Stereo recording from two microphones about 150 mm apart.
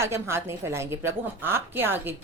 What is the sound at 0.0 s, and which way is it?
A woman's voice, 15° right (ahead or behind).